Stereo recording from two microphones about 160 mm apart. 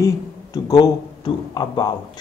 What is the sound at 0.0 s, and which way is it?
A man's voice, 20° left (ahead or behind).